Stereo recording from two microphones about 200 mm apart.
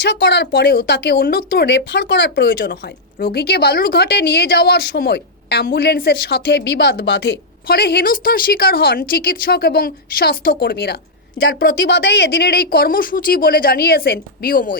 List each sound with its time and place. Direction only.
0.0 s speech: 55° left (ahead or behind)